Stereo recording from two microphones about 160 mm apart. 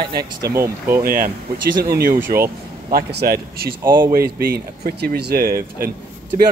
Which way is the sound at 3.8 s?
15° right (ahead or behind).